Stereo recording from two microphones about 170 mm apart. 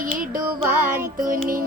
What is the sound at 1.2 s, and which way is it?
Music, 55° right (ahead or behind).